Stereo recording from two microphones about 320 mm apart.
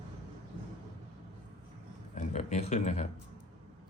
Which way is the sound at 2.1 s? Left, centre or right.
Left.